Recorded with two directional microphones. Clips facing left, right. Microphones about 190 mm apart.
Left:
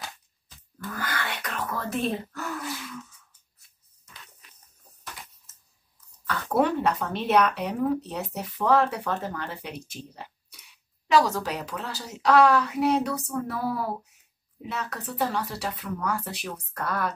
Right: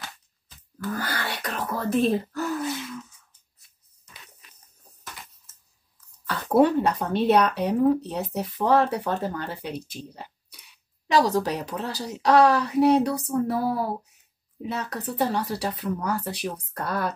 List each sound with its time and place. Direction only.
0.9 s speech: 35° right (ahead or behind)
2.6 s gasp: 20° right (ahead or behind)
6.2 s a woman's voice: 35° right (ahead or behind)